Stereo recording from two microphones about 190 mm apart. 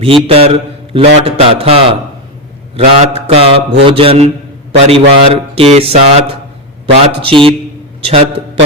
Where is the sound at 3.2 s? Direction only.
30° right (ahead or behind).